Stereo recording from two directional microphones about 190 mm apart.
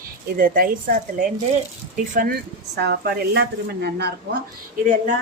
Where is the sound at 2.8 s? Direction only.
60° right (ahead or behind).